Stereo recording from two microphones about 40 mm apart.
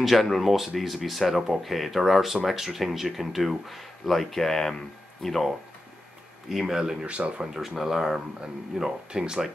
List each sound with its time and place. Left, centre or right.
0.0 s speech: centre
6.5 s speech: centre
7.0 s speech: right
7.5 s speech: centre
8.4 s speech: centre